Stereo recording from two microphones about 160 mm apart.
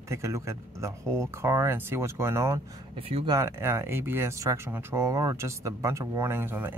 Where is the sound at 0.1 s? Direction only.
15° right (ahead or behind).